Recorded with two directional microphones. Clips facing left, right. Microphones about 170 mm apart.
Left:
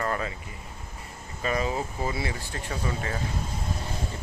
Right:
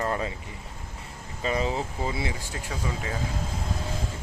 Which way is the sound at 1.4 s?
25° right (ahead or behind).